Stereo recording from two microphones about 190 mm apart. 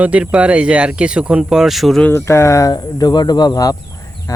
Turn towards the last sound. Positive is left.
turn(degrees=20)  # may be behind; listen again after turning